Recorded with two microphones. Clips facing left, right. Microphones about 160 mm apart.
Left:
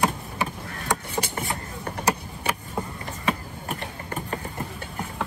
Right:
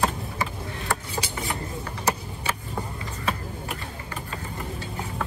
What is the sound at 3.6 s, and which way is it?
Mechanisms, 40° left (ahead or behind).